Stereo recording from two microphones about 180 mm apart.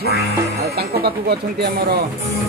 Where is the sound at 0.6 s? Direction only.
60° right (ahead or behind).